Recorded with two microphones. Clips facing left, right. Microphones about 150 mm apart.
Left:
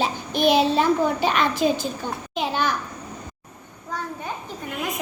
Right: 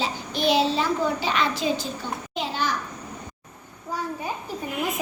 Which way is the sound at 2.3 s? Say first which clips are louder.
Left 4 dB; 60° left (ahead or behind).